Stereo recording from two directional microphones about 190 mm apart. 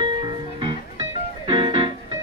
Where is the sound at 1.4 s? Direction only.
30° right (ahead or behind).